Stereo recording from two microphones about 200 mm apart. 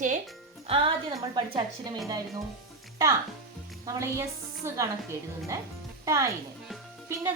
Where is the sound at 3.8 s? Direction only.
15° right (ahead or behind).